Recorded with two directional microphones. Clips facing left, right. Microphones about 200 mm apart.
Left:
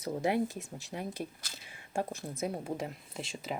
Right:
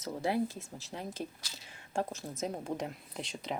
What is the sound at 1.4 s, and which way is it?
Speech, 50° left (ahead or behind).